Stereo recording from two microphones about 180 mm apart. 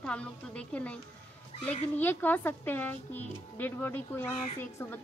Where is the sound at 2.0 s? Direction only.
10° left (ahead or behind).